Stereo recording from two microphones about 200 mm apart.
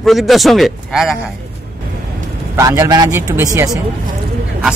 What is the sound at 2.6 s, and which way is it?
Speech, 15° right (ahead or behind).